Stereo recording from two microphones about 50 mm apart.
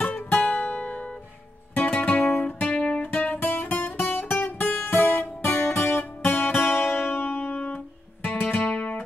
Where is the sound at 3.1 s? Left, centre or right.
Left.